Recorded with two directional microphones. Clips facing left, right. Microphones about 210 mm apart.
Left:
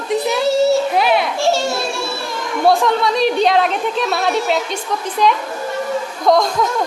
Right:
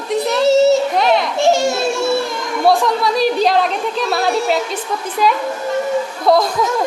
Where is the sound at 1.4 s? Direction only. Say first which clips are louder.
Right 3 dB; 15° right (ahead or behind).